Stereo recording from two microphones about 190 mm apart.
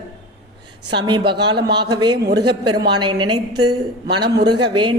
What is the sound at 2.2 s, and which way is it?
Speech, 60° right (ahead or behind).